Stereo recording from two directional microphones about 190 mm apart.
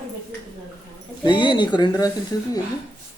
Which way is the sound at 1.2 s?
25° left (ahead or behind).